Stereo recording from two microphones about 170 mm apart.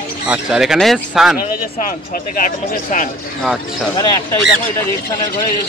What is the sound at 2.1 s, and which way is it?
Speech, 50° left (ahead or behind).